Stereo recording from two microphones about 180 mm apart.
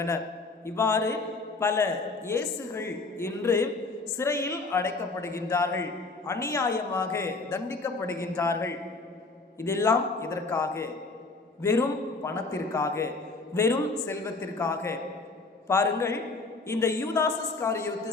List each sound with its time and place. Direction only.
0.6 s a man's voice: 15° left (ahead or behind)